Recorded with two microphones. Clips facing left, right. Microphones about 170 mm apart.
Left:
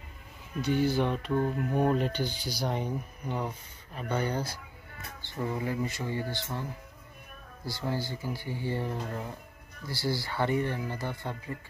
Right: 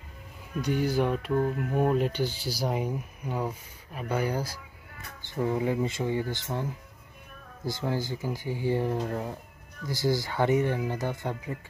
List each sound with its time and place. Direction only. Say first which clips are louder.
0.6 s speech: even; 10° right (ahead or behind)
7.6 s speech: right 3 dB; 20° right (ahead or behind)